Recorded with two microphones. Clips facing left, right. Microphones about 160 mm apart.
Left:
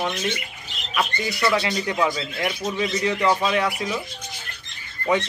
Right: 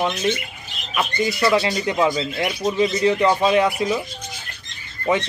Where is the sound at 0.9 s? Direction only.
25° right (ahead or behind).